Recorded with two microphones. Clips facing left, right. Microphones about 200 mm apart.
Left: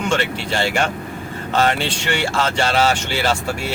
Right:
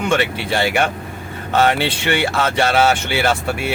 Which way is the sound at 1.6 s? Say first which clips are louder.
Right 3 dB; 60° right (ahead or behind).